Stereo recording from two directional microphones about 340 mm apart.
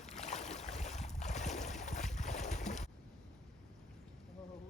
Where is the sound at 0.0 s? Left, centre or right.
Centre.